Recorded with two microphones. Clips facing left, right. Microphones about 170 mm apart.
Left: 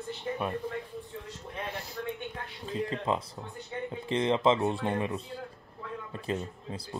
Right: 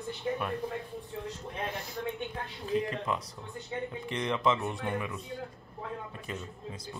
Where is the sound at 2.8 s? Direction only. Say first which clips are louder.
Left 3 dB; 25° left (ahead or behind).